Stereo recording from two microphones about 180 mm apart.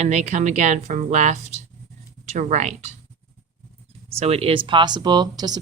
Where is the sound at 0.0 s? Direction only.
40° right (ahead or behind).